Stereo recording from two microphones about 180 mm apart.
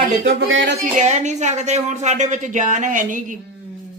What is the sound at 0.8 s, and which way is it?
Speech, 40° right (ahead or behind).